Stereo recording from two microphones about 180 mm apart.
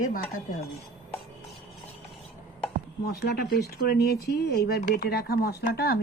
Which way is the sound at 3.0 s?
65° left (ahead or behind).